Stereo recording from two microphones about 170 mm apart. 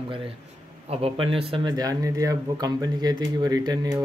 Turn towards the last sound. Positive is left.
turn(degrees=-20)  # may be behind; listen again after turning